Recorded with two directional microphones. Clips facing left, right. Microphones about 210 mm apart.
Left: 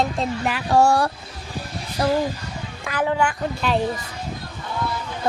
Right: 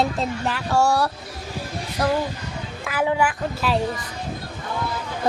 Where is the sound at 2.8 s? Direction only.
10° right (ahead or behind).